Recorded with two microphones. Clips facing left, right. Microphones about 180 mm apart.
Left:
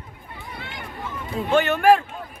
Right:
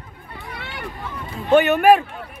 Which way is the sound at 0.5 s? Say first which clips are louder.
Right 2 dB; 70° right (ahead or behind).